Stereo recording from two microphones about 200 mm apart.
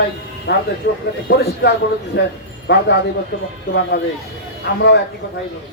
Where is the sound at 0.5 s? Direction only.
60° left (ahead or behind).